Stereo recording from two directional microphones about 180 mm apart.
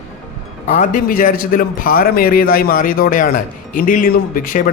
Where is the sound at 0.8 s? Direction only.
45° left (ahead or behind).